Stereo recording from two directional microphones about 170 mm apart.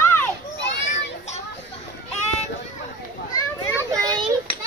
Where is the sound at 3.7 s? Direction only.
20° right (ahead or behind).